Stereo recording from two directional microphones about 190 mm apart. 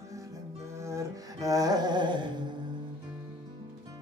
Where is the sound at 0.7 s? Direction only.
15° right (ahead or behind).